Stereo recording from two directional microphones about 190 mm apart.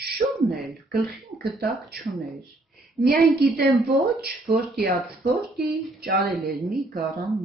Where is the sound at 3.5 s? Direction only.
55° right (ahead or behind).